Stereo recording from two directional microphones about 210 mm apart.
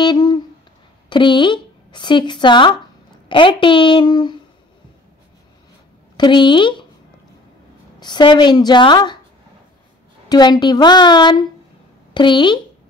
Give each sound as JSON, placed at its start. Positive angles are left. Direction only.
{"t": 0.0, "sound": "a sound", "side_deg": 20}
{"t": 1.1, "sound": "a woman's voice", "side_deg": 20}
{"t": 6.1, "sound": "a woman's voice", "side_deg": 20}
{"t": 8.0, "sound": "a woman's voice", "side_deg": 20}
{"t": 10.2, "sound": "a woman's voice", "side_deg": 20}